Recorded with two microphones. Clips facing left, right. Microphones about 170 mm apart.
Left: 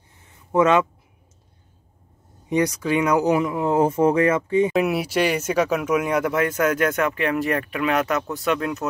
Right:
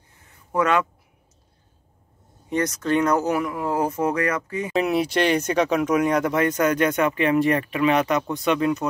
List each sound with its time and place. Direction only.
0.5 s speech: 20° left (ahead or behind)
2.5 s speech: 10° left (ahead or behind)
4.7 s speech: 5° left (ahead or behind)